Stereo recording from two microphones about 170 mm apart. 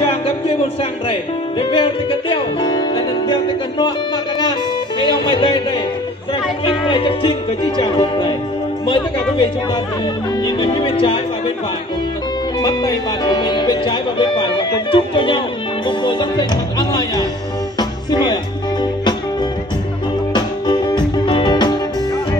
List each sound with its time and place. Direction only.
1.6 s music: 30° left (ahead or behind)
10.4 s speech: 30° left (ahead or behind)
12.5 s speech: 20° left (ahead or behind)
16.0 s music: 25° left (ahead or behind)
20.3 s music: 25° left (ahead or behind)